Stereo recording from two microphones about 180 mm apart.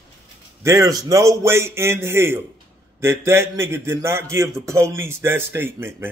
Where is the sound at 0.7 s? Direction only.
15° right (ahead or behind).